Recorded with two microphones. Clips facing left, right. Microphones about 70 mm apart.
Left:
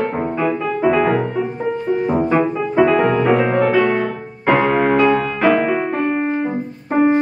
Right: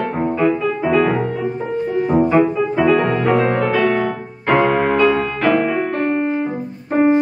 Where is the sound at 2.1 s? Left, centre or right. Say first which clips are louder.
Right 3 dB; centre.